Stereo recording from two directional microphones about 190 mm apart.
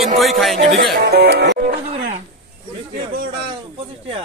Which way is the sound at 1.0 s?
60° right (ahead or behind).